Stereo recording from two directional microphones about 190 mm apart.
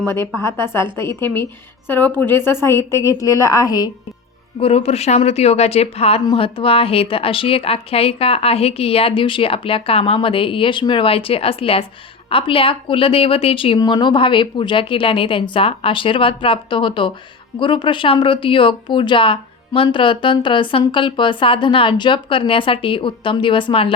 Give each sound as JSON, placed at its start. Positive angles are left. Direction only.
{"t": 0.3, "sound": "a woman's voice", "side_deg": 15}
{"t": 4.6, "sound": "speech", "side_deg": 30}